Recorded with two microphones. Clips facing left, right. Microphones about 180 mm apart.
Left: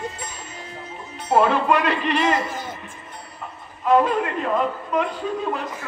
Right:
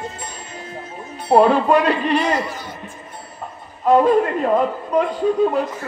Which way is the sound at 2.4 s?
50° left (ahead or behind).